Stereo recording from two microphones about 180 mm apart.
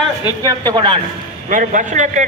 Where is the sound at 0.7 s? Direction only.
25° right (ahead or behind).